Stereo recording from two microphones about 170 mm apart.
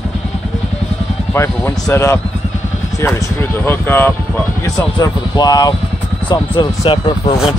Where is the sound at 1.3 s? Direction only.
15° left (ahead or behind).